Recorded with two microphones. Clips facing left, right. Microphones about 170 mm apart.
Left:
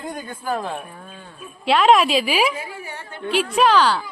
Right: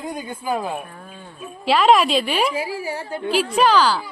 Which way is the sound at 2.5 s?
30° right (ahead or behind).